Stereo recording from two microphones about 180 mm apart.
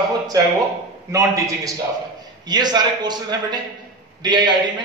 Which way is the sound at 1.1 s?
15° right (ahead or behind).